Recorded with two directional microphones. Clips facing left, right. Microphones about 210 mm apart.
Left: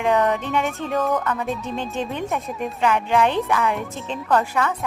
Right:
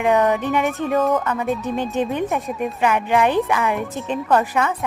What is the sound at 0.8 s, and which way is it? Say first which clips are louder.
Speech: right 4 dB; centre (ahead or behind).